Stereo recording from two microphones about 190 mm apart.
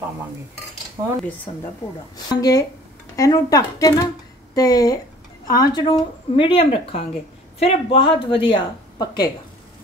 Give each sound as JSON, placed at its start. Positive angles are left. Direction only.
{"t": 2.1, "sound": "speech", "side_deg": 20}